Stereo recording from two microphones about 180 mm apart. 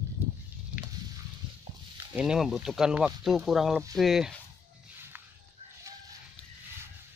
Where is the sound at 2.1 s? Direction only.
5° right (ahead or behind).